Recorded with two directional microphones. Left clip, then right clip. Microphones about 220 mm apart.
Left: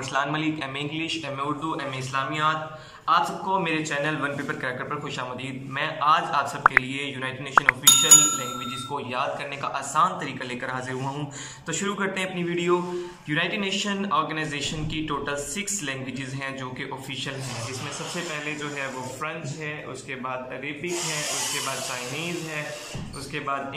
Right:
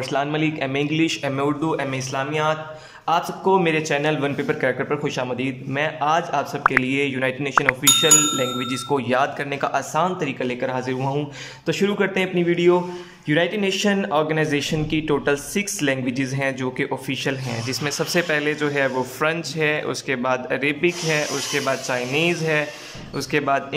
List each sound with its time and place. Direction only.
0.1 s a man's voice: 25° right (ahead or behind)
7.5 s speech: centre (ahead or behind)
8.9 s a man's voice: 35° right (ahead or behind)